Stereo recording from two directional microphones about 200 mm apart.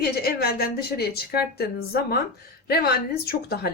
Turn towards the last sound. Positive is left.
turn(degrees=50)  # may be behind; listen again after turning